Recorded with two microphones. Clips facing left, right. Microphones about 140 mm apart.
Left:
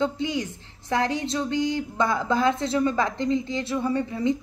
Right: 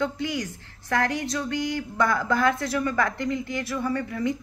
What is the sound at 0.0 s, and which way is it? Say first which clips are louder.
Speech: left 2 dB; 20° left (ahead or behind).